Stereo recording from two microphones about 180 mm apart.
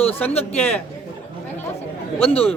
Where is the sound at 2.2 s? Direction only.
35° left (ahead or behind).